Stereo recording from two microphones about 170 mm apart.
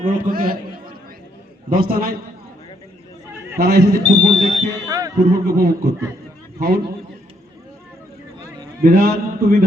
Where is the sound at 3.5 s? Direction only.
60° right (ahead or behind).